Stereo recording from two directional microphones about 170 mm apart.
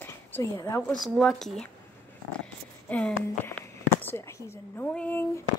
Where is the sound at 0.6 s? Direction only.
15° left (ahead or behind).